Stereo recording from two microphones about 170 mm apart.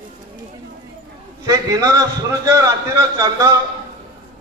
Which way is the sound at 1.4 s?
20° right (ahead or behind).